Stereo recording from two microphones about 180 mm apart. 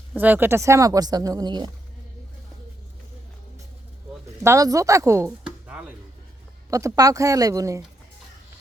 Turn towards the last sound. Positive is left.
turn(degrees=-20)  # may be behind; listen again after turning